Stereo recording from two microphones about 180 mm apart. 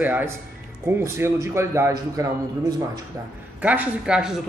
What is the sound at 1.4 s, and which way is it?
Speech, 15° right (ahead or behind).